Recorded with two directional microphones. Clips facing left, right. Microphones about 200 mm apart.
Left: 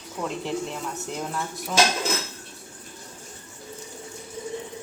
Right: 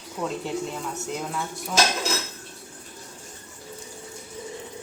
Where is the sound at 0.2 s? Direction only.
Centre (ahead or behind).